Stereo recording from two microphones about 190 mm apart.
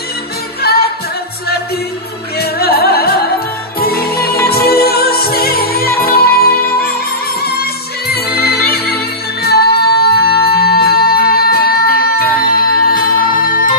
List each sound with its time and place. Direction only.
0.6 s music: 55° left (ahead or behind)
2.3 s music: 55° left (ahead or behind)
8.1 s music: 55° left (ahead or behind)